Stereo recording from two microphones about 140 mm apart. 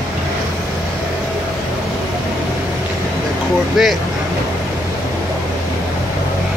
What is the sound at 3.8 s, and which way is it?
Speech, centre (ahead or behind).